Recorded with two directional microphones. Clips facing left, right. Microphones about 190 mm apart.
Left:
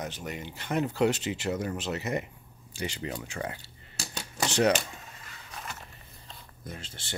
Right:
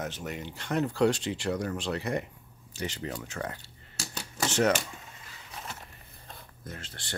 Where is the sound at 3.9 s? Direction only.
20° left (ahead or behind).